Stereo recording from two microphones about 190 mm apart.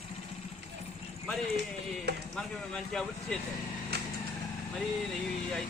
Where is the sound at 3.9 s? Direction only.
55° right (ahead or behind).